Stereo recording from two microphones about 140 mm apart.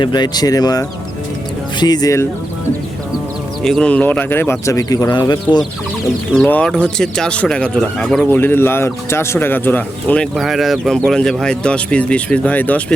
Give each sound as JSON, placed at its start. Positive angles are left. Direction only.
{"t": 0.0, "sound": "speech", "side_deg": 30}
{"t": 3.6, "sound": "speech", "side_deg": 5}
{"t": 6.3, "sound": "speech", "side_deg": 10}
{"t": 10.3, "sound": "speech", "side_deg": 0}